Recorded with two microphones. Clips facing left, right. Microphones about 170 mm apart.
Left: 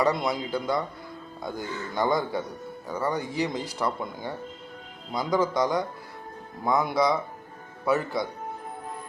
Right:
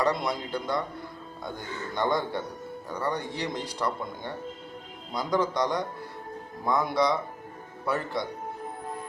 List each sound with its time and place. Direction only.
0.0 s speech: centre (ahead or behind)